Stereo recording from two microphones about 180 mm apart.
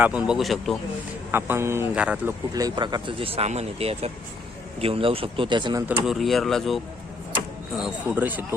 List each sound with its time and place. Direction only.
0.0 s speech: 5° right (ahead or behind)
1.3 s speech: 15° right (ahead or behind)
2.6 s speech: 25° right (ahead or behind)
5.9 s speech: centre (ahead or behind)
7.8 s speech: 10° right (ahead or behind)